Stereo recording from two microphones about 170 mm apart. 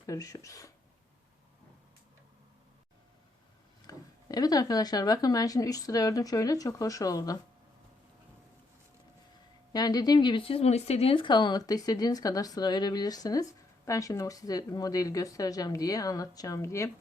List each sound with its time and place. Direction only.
0.0 s speech: 20° left (ahead or behind)
3.8 s speech: 20° left (ahead or behind)
9.7 s speech: 25° left (ahead or behind)